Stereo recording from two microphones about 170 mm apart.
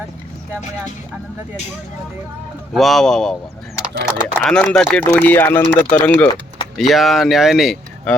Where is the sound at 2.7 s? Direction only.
Centre (ahead or behind).